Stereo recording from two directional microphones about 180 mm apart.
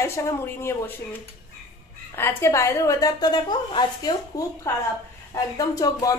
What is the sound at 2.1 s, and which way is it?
A woman's voice, 15° left (ahead or behind).